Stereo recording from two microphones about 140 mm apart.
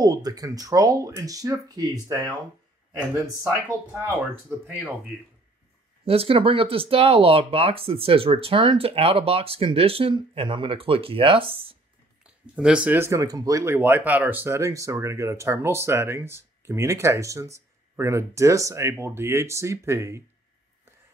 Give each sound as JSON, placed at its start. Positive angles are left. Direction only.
{"t": 0.0, "sound": "speech", "side_deg": -25}
{"t": 4.1, "sound": "speech", "side_deg": -10}
{"t": 6.0, "sound": "speech", "side_deg": -45}
{"t": 12.2, "sound": "speech", "side_deg": -5}
{"t": 13.7, "sound": "speech", "side_deg": -10}